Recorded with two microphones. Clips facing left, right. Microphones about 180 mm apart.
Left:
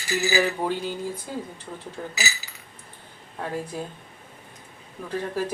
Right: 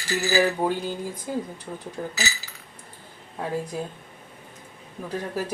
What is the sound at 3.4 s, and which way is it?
Speech, 10° right (ahead or behind).